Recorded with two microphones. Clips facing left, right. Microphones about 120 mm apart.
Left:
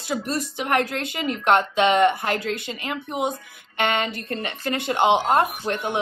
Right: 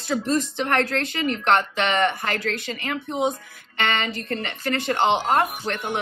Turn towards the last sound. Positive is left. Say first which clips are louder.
# left 2 dB
turn(degrees=15)  # may be behind; listen again after turning